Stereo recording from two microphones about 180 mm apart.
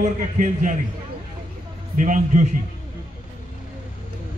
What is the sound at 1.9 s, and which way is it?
Speech, 45° right (ahead or behind).